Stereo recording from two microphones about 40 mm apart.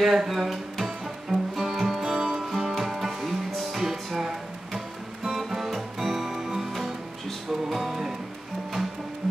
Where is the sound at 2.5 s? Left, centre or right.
Centre.